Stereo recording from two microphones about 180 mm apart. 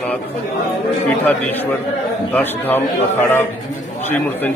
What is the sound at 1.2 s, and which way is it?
A man's voice, 10° left (ahead or behind).